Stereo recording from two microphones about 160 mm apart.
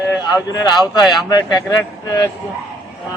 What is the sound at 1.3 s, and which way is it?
A man's voice, 25° left (ahead or behind).